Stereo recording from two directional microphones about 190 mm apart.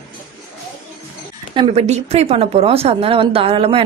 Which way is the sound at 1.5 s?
30° right (ahead or behind).